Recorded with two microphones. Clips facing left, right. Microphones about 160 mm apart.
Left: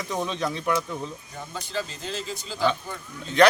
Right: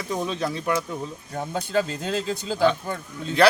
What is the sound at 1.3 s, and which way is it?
Speech, 60° right (ahead or behind).